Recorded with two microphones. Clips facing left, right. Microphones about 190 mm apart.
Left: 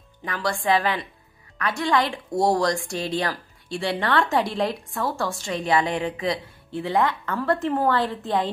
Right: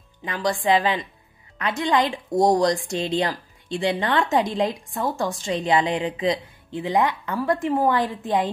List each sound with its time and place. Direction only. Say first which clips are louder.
0.2 s a woman's voice: right 3 dB; 20° right (ahead or behind)